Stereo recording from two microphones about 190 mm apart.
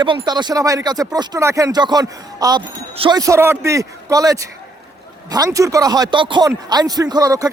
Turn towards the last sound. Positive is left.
turn(degrees=-20)  # may be behind; listen again after turning